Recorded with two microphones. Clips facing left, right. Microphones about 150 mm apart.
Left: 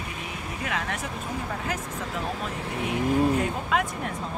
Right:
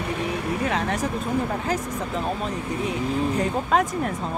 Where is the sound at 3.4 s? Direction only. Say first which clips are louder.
Right 4 dB; 40° right (ahead or behind).